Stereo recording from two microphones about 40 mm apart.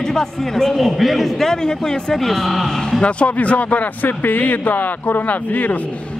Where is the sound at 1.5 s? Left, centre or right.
Centre.